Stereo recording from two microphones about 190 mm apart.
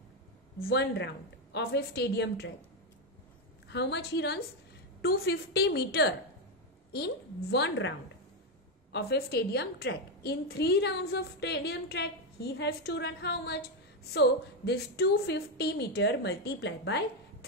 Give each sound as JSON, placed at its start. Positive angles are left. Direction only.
{"t": 0.6, "sound": "a woman's voice", "side_deg": 60}
{"t": 3.6, "sound": "a woman's voice", "side_deg": 65}
{"t": 8.9, "sound": "a woman's voice", "side_deg": 60}